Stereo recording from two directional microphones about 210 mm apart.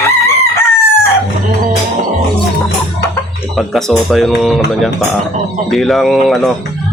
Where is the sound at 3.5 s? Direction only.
Centre (ahead or behind).